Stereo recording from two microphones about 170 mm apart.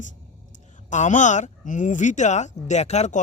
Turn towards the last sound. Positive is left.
turn(degrees=40)  # may be behind; listen again after turning